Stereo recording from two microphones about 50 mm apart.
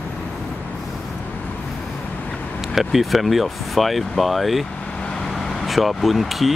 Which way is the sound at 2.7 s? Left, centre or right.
Centre.